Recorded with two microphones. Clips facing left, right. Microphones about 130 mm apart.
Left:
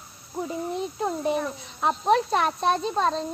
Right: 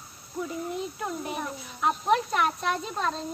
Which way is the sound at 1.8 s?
30° left (ahead or behind).